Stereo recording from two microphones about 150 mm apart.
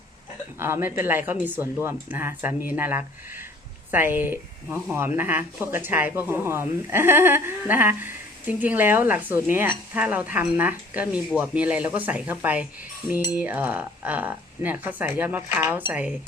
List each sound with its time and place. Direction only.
0.6 s speech: 15° right (ahead or behind)